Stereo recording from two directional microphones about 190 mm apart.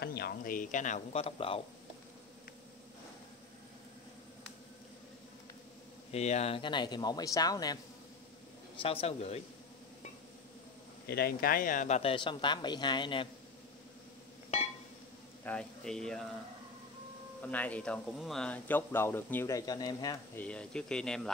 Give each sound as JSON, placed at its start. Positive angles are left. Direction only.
{"t": 0.0, "sound": "speech", "side_deg": 55}
{"t": 6.1, "sound": "speech", "side_deg": 35}
{"t": 8.8, "sound": "speech", "side_deg": 30}
{"t": 11.1, "sound": "speech", "side_deg": 55}
{"t": 15.4, "sound": "speech", "side_deg": 5}
{"t": 17.4, "sound": "speech", "side_deg": 10}
{"t": 20.3, "sound": "speech", "side_deg": 5}